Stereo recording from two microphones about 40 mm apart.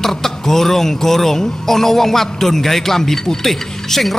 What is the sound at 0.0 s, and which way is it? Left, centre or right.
A man's voice, centre.